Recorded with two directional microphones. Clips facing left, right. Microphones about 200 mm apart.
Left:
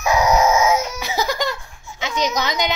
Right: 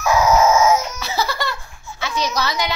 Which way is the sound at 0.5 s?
15° left (ahead or behind).